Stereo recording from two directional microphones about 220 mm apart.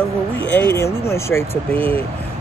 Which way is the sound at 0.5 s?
10° left (ahead or behind).